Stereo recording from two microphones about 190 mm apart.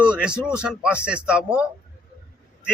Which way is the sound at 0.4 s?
5° right (ahead or behind).